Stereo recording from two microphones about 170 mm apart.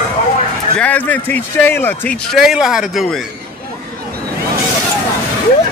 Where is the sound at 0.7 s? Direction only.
10° left (ahead or behind).